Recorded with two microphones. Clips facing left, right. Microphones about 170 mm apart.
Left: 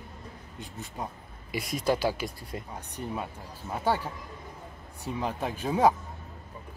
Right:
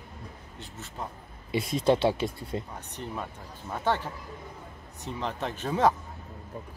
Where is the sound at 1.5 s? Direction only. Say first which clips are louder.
Right 4 dB; 25° right (ahead or behind).